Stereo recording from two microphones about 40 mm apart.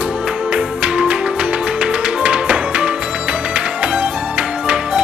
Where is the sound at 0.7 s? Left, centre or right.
Right.